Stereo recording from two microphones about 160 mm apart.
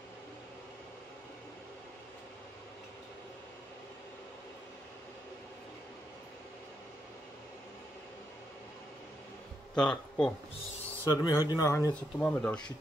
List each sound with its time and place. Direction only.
9.8 s speech: 5° left (ahead or behind)
11.1 s speech: 25° left (ahead or behind)
11.9 s speech: 10° left (ahead or behind)